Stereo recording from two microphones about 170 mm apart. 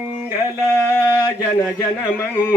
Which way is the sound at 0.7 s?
15° left (ahead or behind).